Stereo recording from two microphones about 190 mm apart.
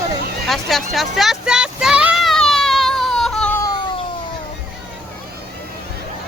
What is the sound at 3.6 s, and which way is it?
Cat, 20° left (ahead or behind).